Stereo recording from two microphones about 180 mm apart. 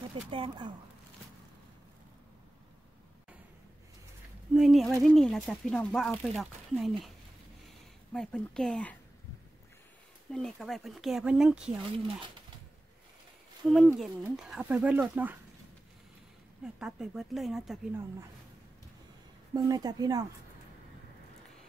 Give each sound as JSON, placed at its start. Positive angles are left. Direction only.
{"t": 0.1, "sound": "speech", "side_deg": -30}
{"t": 4.6, "sound": "speech", "side_deg": 0}
{"t": 8.1, "sound": "speech", "side_deg": 0}
{"t": 10.3, "sound": "speech", "side_deg": 0}
{"t": 13.6, "sound": "speech", "side_deg": 0}
{"t": 16.6, "sound": "speech", "side_deg": -5}
{"t": 19.5, "sound": "speech", "side_deg": -20}